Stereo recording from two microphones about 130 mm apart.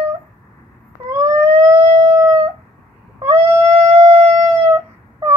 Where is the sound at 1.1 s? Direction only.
20° right (ahead or behind).